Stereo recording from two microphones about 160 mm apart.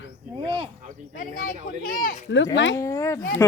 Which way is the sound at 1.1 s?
60° left (ahead or behind).